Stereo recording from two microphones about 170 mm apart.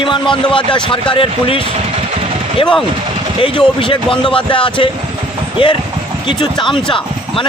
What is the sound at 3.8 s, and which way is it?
Speech, 30° left (ahead or behind).